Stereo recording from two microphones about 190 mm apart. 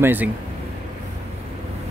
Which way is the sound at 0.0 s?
10° right (ahead or behind).